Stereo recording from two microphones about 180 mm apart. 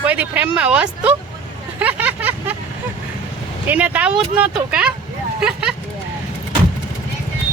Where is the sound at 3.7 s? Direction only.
10° right (ahead or behind).